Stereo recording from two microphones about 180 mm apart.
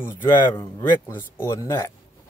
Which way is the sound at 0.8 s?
10° left (ahead or behind).